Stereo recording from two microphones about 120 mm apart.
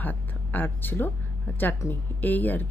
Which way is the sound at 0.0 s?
15° left (ahead or behind).